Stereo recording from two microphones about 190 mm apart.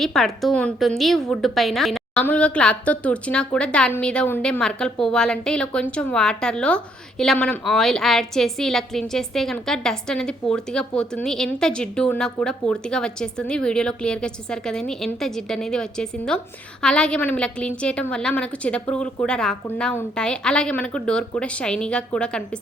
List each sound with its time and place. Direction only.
0.0 s a woman's voice: centre (ahead or behind)